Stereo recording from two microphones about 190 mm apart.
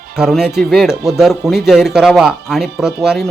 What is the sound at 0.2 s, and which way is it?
Speech, centre (ahead or behind).